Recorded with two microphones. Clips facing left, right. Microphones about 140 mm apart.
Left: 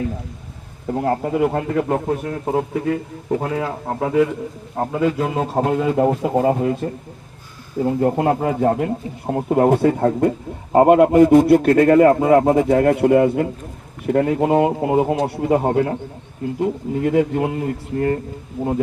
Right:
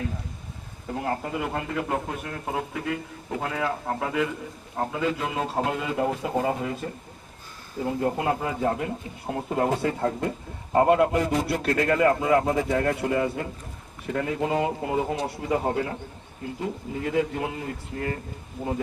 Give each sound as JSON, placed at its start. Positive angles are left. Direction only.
{"t": 0.9, "sound": "a man's voice", "side_deg": 45}
{"t": 8.0, "sound": "a man's voice", "side_deg": 45}